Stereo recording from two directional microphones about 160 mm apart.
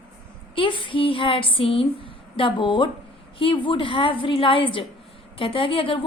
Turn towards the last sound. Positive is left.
turn(degrees=35)  # may be behind; listen again after turning